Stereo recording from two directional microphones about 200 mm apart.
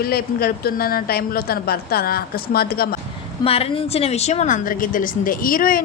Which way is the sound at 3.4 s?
30° left (ahead or behind).